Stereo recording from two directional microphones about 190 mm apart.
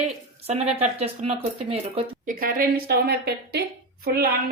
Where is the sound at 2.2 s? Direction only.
45° right (ahead or behind).